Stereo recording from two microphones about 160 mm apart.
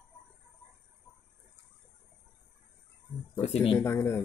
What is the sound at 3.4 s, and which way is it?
Speech, 40° left (ahead or behind).